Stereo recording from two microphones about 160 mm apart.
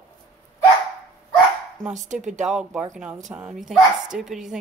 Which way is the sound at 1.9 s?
50° right (ahead or behind).